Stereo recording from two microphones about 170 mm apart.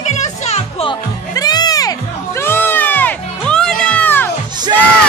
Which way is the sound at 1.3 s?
25° left (ahead or behind).